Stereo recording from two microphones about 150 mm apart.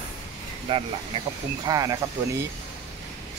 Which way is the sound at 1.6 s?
25° right (ahead or behind).